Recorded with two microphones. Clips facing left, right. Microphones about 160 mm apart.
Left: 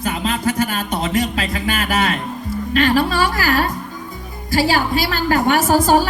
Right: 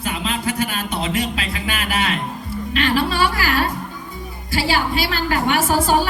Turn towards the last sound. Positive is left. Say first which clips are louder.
# left 3 dB
turn(degrees=45)  # may be behind; listen again after turning